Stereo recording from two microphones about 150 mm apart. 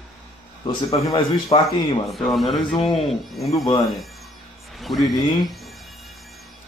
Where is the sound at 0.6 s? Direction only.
30° left (ahead or behind).